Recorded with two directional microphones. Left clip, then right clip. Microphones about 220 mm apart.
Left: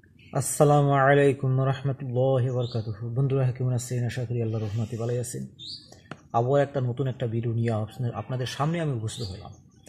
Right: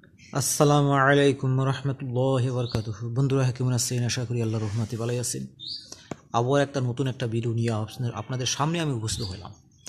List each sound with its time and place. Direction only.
0.3 s speech: 5° right (ahead or behind)
3.2 s a man's voice: 20° right (ahead or behind)